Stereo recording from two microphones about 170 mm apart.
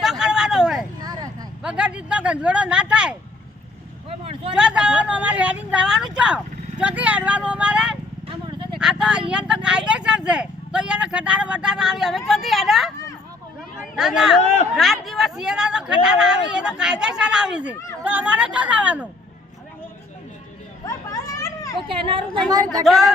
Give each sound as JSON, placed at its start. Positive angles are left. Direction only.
{"t": 0.0, "sound": "vehicle", "side_deg": 0}
{"t": 1.6, "sound": "speech", "side_deg": -5}
{"t": 4.2, "sound": "speech", "side_deg": -35}
{"t": 4.5, "sound": "speech", "side_deg": -5}
{"t": 8.3, "sound": "a sound", "side_deg": -30}
{"t": 8.8, "sound": "a sound", "side_deg": -5}
{"t": 9.3, "sound": "speech", "side_deg": -5}
{"t": 13.9, "sound": "speech", "side_deg": -5}
{"t": 20.8, "sound": "children playing", "side_deg": 20}
{"t": 22.1, "sound": "a woman's voice", "side_deg": -25}
{"t": 22.8, "sound": "speech", "side_deg": 0}